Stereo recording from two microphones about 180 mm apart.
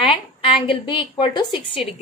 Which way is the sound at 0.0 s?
30° left (ahead or behind).